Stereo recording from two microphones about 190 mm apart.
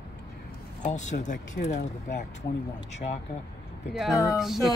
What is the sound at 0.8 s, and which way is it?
Speech, 40° left (ahead or behind).